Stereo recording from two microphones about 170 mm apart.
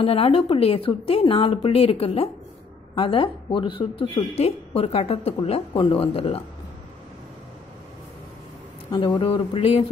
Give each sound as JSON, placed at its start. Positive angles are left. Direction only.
{"t": 0.0, "sound": "a woman's voice", "side_deg": 35}
{"t": 8.9, "sound": "speech", "side_deg": 25}